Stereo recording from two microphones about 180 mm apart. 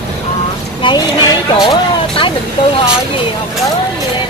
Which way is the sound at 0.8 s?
25° left (ahead or behind).